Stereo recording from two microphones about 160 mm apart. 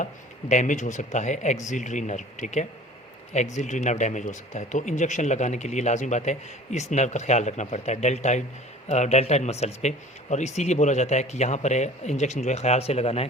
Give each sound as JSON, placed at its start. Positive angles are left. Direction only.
{"t": 0.0, "sound": "speech", "side_deg": 50}